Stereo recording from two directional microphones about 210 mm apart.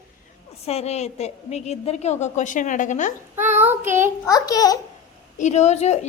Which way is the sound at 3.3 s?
10° right (ahead or behind).